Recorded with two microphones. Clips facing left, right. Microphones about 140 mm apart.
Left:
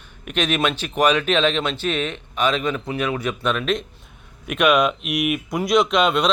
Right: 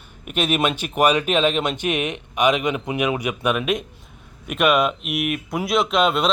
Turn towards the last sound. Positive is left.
turn(degrees=0)  # may be behind; listen again after turning